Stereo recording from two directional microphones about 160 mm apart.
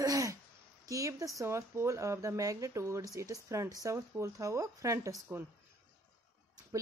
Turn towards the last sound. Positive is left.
turn(degrees=-20)  # may be behind; listen again after turning